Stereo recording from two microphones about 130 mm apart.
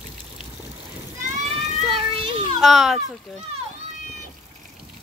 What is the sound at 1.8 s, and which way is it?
Speech, 45° right (ahead or behind).